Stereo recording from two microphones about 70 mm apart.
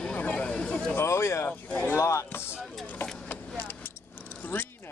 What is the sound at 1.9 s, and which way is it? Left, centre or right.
Speech, left.